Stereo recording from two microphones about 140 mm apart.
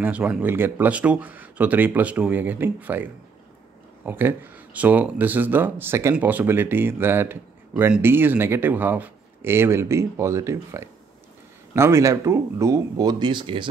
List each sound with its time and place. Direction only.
0.0 s speech: 10° right (ahead or behind); by 13.7 s 35° right (ahead or behind)